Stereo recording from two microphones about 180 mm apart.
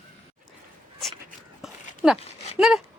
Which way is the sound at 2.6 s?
Centre (ahead or behind).